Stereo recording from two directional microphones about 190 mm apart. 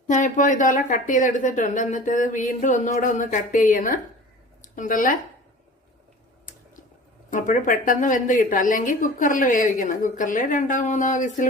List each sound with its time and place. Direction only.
0.1 s a woman's voice: 40° left (ahead or behind)
7.3 s a woman's voice: 40° left (ahead or behind)